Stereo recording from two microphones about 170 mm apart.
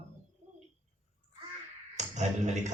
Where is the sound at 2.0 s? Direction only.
45° right (ahead or behind).